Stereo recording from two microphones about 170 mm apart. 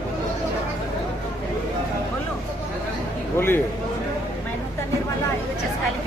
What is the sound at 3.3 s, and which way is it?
Speech, 15° left (ahead or behind).